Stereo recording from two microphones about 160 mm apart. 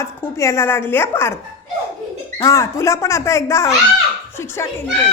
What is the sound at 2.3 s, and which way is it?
Speech, 20° left (ahead or behind).